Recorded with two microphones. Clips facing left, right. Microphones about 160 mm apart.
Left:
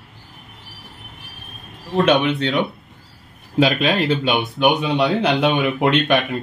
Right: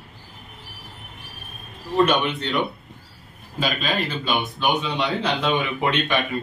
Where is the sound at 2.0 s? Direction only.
70° left (ahead or behind).